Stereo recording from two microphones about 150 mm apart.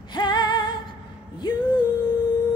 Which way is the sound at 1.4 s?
30° left (ahead or behind).